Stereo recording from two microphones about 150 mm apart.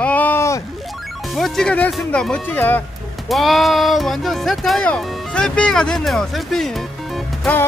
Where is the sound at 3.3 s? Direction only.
Centre (ahead or behind).